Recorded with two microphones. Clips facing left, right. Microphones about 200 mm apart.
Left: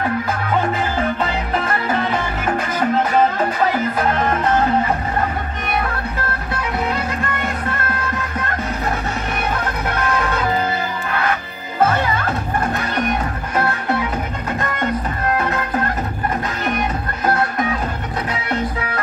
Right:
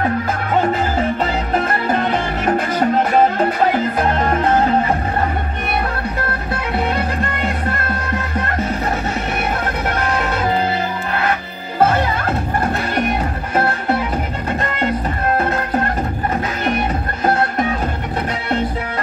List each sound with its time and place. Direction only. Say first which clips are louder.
1.9 s music: right 2 dB; 35° right (ahead or behind)